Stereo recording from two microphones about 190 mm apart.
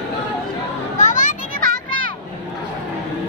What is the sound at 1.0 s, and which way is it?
Children playing, 40° left (ahead or behind).